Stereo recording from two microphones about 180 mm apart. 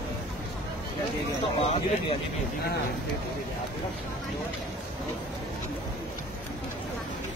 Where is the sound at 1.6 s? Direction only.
30° left (ahead or behind).